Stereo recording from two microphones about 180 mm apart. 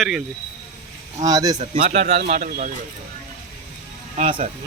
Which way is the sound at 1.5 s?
40° right (ahead or behind).